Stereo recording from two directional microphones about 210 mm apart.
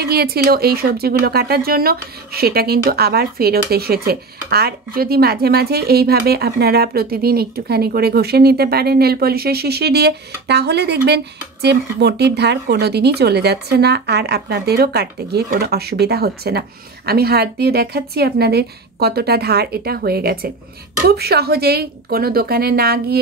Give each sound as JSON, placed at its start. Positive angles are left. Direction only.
{"t": 0.0, "sound": "speech", "side_deg": -50}